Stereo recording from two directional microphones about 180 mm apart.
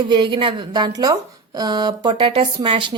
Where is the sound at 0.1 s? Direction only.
25° right (ahead or behind).